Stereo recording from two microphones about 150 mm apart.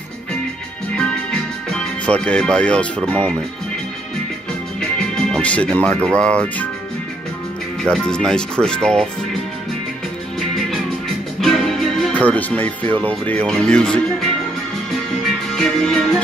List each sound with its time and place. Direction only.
0.9 s music: 5° left (ahead or behind)
4.7 s speech: 5° left (ahead or behind)
7.8 s speech: 5° left (ahead or behind)
11.4 s music: centre (ahead or behind)
13.2 s speech: 10° left (ahead or behind)
15.2 s music: 5° left (ahead or behind)